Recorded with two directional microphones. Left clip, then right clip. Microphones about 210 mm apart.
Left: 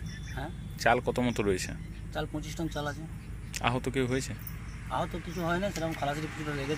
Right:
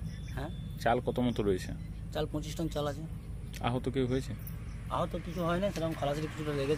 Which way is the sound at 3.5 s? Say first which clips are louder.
Left 3 dB; 5° right (ahead or behind).